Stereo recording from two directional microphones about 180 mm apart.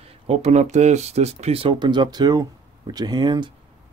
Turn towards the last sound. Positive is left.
turn(degrees=-25)  # may be behind; listen again after turning